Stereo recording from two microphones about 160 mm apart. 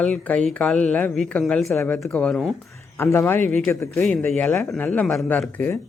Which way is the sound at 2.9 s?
15° left (ahead or behind).